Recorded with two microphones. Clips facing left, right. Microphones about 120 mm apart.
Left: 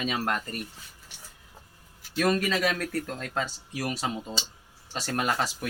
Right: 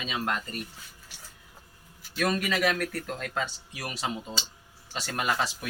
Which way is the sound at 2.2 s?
40° left (ahead or behind).